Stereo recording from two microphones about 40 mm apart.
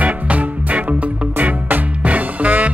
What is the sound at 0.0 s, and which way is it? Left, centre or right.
Music, right.